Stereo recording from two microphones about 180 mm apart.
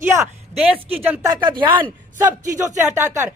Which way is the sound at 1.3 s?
25° right (ahead or behind).